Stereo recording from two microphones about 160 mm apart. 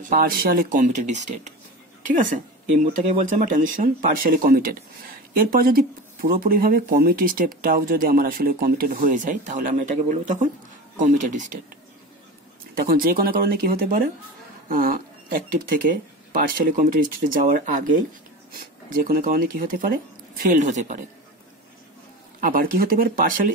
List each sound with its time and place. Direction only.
0.1 s speech: 65° right (ahead or behind)
12.7 s speech: 65° right (ahead or behind); by 21.0 s 50° right (ahead or behind)
22.4 s speech: 60° right (ahead or behind)